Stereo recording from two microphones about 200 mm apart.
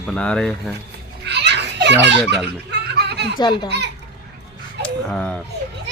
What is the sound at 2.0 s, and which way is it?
Speech, 60° right (ahead or behind).